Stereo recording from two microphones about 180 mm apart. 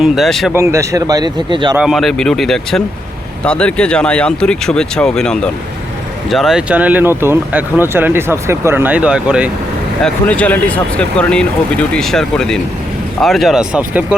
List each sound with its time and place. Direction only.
0.0 s speech: centre (ahead or behind)
0.5 s speech: 15° right (ahead or behind)
1.7 s speech: 5° right (ahead or behind)
10.0 s speech: 5° left (ahead or behind)